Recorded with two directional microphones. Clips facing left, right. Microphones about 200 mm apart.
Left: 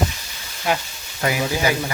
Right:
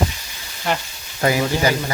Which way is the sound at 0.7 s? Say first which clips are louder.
Left 1 dB; 10° left (ahead or behind).